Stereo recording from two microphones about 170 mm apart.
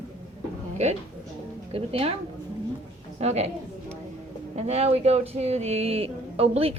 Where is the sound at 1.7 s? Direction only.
35° right (ahead or behind).